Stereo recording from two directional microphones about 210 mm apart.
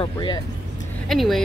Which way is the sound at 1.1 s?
Centre (ahead or behind).